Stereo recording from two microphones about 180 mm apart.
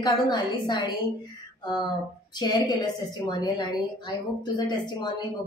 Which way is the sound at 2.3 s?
25° left (ahead or behind).